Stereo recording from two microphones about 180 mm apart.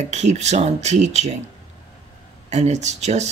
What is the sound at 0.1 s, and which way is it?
Speech, 40° right (ahead or behind).